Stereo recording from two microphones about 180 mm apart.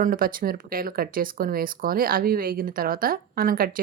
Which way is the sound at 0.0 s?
50° right (ahead or behind).